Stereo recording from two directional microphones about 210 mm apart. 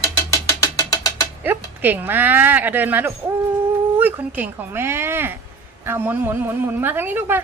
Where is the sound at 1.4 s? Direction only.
10° right (ahead or behind).